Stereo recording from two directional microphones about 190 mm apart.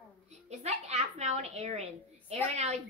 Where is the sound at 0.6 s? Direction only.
35° right (ahead or behind).